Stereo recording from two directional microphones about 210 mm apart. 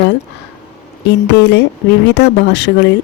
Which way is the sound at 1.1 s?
55° left (ahead or behind).